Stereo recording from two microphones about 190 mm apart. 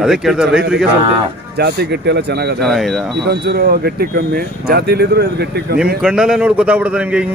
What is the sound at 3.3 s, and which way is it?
Speech, 55° right (ahead or behind).